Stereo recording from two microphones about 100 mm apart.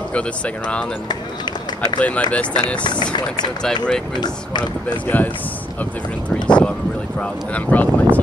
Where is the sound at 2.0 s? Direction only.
15° left (ahead or behind).